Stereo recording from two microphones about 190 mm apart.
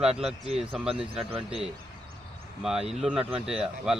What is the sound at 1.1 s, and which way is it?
Speech, 30° right (ahead or behind).